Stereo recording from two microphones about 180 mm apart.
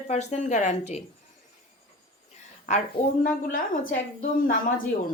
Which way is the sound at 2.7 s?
40° left (ahead or behind).